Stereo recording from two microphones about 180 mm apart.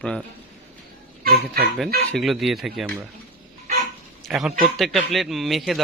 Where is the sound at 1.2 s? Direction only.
55° right (ahead or behind).